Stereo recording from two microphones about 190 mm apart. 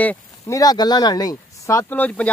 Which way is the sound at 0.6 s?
20° left (ahead or behind).